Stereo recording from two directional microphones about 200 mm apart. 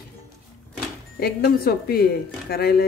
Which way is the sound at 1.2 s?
50° left (ahead or behind).